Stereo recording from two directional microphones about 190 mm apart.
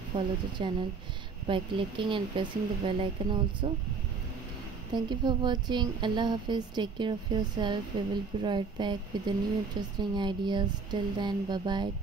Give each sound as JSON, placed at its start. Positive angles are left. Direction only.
{"t": 0.1, "sound": "speech", "side_deg": -25}
{"t": 4.9, "sound": "speech", "side_deg": -25}